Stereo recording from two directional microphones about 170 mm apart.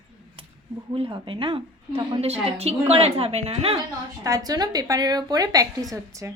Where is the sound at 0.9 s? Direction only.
30° right (ahead or behind).